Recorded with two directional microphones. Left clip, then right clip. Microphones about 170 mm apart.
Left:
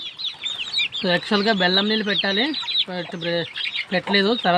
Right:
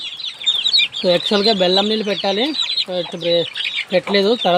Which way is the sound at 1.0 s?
40° left (ahead or behind).